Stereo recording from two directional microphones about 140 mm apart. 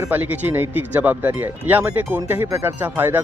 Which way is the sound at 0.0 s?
15° right (ahead or behind).